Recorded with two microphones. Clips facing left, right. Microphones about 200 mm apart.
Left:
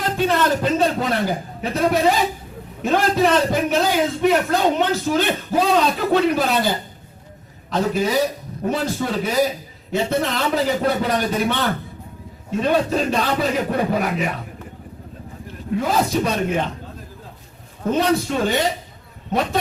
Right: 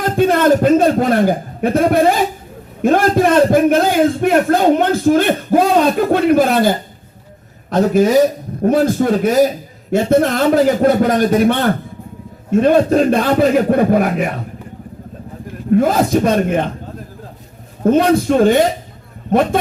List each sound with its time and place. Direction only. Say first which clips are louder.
0.0 s a man's voice: right 7 dB; 50° right (ahead or behind)
15.7 s a man's voice: right 7 dB; 50° right (ahead or behind)
17.8 s a man's voice: right 7 dB; 50° right (ahead or behind)